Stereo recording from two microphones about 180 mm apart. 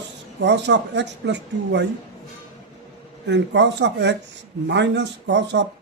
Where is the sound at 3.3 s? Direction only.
75° right (ahead or behind).